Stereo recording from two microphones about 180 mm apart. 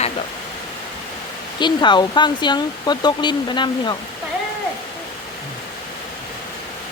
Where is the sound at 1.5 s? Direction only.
25° left (ahead or behind).